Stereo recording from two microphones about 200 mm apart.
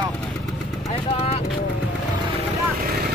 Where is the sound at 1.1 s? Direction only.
30° left (ahead or behind).